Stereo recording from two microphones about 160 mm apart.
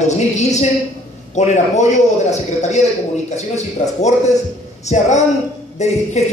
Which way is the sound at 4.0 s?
45° left (ahead or behind).